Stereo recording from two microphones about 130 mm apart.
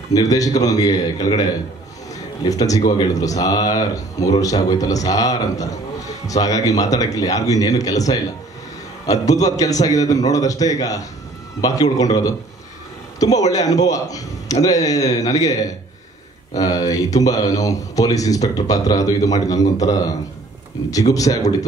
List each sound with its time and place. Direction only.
0.1 s speech: 25° left (ahead or behind)
13.5 s speech: 25° left (ahead or behind)
21.1 s speech: 25° left (ahead or behind)